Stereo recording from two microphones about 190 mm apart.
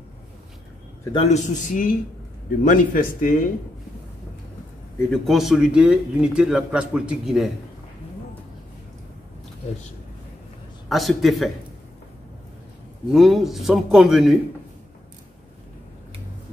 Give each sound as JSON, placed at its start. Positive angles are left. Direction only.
{"t": 1.1, "sound": "a man's voice", "side_deg": 35}
{"t": 5.1, "sound": "speech", "side_deg": 0}
{"t": 10.9, "sound": "speech", "side_deg": 0}
{"t": 13.1, "sound": "speech", "side_deg": 0}